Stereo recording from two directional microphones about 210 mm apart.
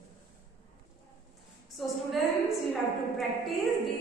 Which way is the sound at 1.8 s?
Centre (ahead or behind).